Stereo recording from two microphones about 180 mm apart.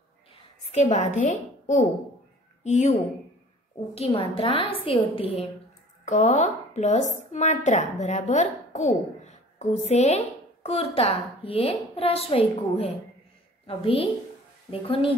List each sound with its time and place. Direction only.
0.7 s a woman's voice: 40° left (ahead or behind)
3.9 s a woman's voice: 30° left (ahead or behind)